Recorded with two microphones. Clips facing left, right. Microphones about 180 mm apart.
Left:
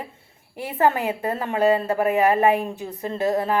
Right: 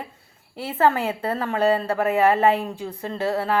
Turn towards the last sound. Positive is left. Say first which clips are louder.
# left 2 dB
turn(degrees=15)  # may be behind; listen again after turning